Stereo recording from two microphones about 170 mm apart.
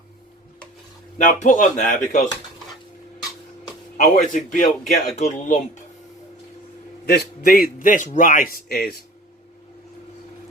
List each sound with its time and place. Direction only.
1.2 s speech: 50° left (ahead or behind)
3.9 s speech: 50° left (ahead or behind)
7.0 s a man's voice: 60° left (ahead or behind)